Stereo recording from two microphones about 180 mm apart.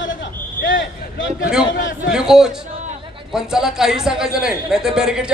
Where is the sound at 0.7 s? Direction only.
90° left.